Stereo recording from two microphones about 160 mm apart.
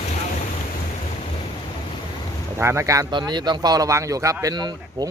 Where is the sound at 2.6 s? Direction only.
15° right (ahead or behind).